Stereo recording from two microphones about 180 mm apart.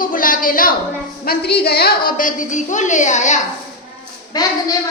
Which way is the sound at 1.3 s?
60° left (ahead or behind).